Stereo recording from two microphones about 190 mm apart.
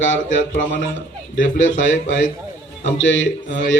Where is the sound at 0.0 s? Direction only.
40° left (ahead or behind).